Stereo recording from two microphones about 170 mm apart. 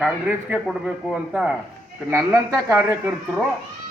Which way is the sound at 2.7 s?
15° right (ahead or behind).